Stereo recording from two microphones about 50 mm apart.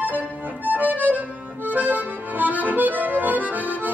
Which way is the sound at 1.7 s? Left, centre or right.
Right.